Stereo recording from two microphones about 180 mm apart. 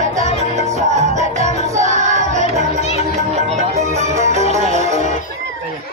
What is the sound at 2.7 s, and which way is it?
Music, 35° left (ahead or behind).